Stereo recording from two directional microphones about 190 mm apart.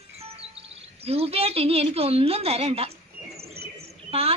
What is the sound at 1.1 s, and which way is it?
A woman's voice, 30° right (ahead or behind).